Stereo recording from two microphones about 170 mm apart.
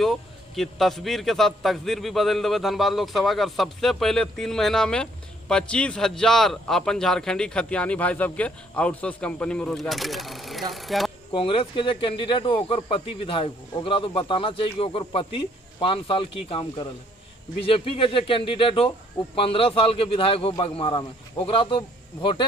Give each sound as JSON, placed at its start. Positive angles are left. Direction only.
{"t": 0.0, "sound": "a man's voice", "side_deg": 0}
{"t": 11.3, "sound": "speech", "side_deg": 30}